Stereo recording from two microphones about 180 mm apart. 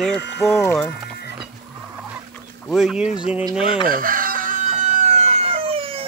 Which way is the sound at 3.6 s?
30° left (ahead or behind).